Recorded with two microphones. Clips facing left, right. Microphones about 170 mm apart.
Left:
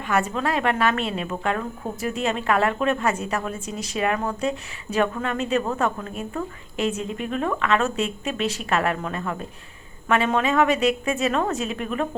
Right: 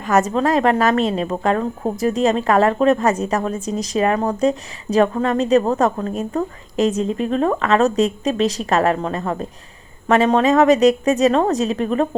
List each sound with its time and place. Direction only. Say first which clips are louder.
0.0 s speech: right 7 dB; 40° right (ahead or behind)